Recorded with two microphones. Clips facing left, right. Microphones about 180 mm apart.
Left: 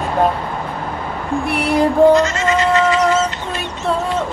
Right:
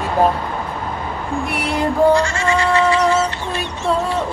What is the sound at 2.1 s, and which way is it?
Goat, 20° left (ahead or behind).